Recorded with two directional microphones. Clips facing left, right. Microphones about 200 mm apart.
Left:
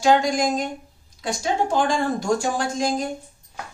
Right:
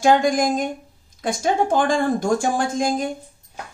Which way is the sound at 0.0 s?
50° right (ahead or behind).